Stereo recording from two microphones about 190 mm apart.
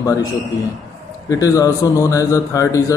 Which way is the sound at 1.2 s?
15° left (ahead or behind).